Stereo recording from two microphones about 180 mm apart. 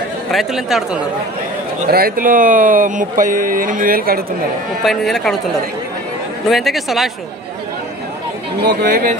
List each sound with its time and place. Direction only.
0.3 s speech: centre (ahead or behind)
1.9 s speech: 55° right (ahead or behind)
4.8 s speech: centre (ahead or behind)
6.5 s speech: centre (ahead or behind)
8.6 s speech: 50° right (ahead or behind)